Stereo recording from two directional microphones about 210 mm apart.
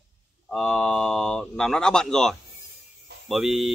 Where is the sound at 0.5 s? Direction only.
5° left (ahead or behind).